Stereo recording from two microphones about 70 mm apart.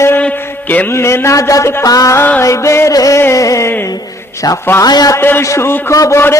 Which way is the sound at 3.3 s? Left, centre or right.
Left.